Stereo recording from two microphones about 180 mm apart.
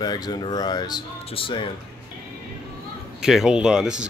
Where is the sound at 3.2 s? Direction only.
Centre (ahead or behind).